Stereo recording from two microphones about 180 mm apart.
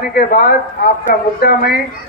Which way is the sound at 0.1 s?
55° left (ahead or behind).